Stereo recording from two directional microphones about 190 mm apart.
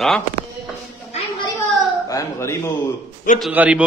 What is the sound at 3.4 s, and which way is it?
Speech, 5° right (ahead or behind).